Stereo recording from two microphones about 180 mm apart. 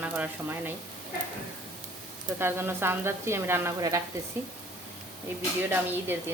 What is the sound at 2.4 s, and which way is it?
Speech, 15° right (ahead or behind).